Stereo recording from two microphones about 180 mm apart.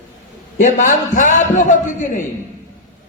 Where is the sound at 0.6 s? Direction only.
45° left (ahead or behind).